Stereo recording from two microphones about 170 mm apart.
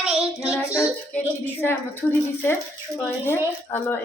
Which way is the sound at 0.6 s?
10° left (ahead or behind).